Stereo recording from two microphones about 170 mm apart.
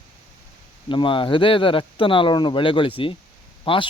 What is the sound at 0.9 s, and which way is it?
Speech, 30° left (ahead or behind).